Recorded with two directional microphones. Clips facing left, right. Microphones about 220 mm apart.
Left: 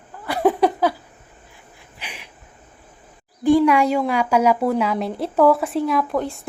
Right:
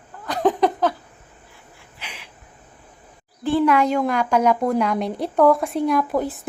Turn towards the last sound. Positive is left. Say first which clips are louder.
# right 1 dB
turn(degrees=-5)  # may be behind; listen again after turning